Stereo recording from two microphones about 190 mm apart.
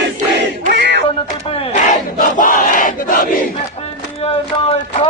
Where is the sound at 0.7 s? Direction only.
65° right (ahead or behind).